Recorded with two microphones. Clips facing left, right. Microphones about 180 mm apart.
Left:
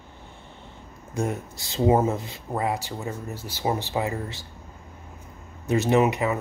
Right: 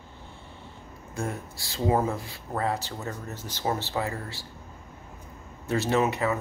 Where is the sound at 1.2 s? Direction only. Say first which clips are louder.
Left 5 dB; 20° left (ahead or behind).